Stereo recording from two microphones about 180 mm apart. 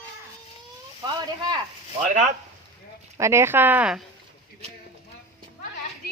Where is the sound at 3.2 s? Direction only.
15° right (ahead or behind).